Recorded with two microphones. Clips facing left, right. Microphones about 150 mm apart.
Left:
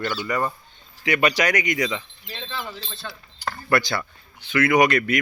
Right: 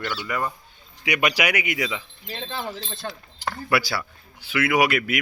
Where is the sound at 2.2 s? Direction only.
50° right (ahead or behind).